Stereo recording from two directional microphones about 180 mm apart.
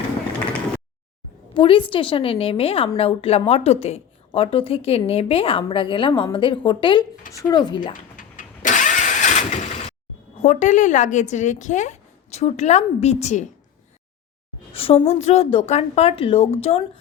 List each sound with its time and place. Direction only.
1.5 s a woman's voice: 30° left (ahead or behind)
8.1 s engine starting: 45° left (ahead or behind)
10.4 s a woman's voice: 40° left (ahead or behind)
14.7 s a woman's voice: 30° left (ahead or behind)